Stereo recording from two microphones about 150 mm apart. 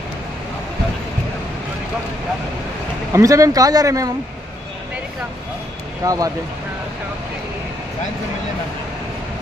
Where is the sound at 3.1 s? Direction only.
20° right (ahead or behind).